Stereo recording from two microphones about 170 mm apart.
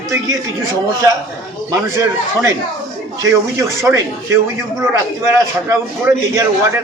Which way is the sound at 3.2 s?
20° right (ahead or behind).